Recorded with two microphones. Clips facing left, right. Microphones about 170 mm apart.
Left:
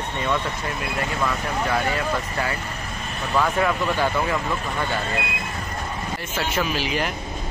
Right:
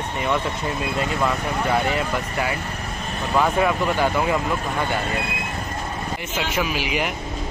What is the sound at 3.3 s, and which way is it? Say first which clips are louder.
Speech: right 2 dB; 15° right (ahead or behind).